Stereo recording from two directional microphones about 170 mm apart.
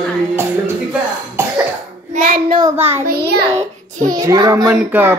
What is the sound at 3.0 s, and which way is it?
Speech, 70° right (ahead or behind).